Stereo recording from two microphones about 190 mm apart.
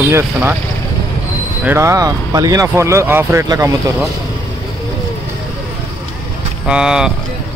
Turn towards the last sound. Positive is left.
turn(degrees=-5)  # may be behind; listen again after turning